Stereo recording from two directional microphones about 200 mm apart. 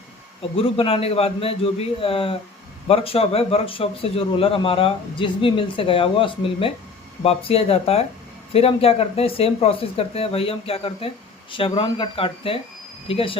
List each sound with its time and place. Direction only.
0.5 s a man's voice: 30° left (ahead or behind)